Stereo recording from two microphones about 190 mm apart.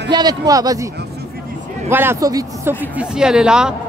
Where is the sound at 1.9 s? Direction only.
10° right (ahead or behind).